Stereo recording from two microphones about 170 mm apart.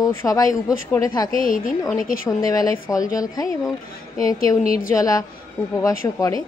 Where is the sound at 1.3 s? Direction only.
55° left (ahead or behind).